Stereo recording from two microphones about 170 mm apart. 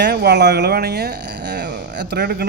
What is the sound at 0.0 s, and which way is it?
Speech, 75° right (ahead or behind).